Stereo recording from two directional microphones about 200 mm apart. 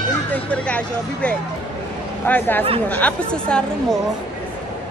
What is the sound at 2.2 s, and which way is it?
A woman's voice, 10° left (ahead or behind).